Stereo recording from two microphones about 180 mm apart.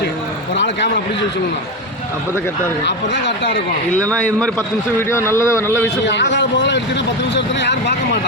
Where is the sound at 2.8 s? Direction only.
75° left (ahead or behind).